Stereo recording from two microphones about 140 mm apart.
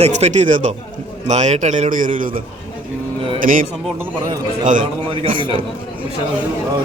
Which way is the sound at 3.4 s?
80° right.